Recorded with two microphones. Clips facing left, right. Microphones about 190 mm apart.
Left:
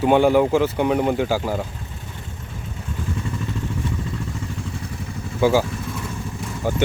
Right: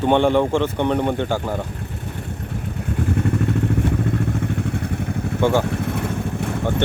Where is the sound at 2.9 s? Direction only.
65° right (ahead or behind).